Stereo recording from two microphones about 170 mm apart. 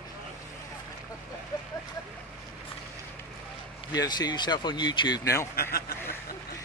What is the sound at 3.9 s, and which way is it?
Speech, 25° left (ahead or behind).